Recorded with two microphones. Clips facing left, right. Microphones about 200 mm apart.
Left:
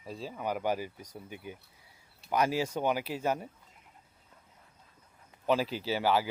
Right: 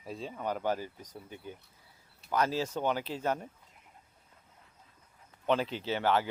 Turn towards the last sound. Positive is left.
turn(degrees=10)  # may be behind; listen again after turning